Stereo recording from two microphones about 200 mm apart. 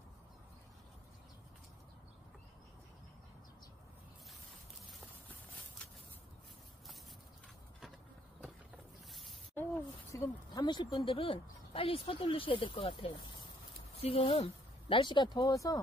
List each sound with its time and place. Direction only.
10.1 s speech: 20° left (ahead or behind)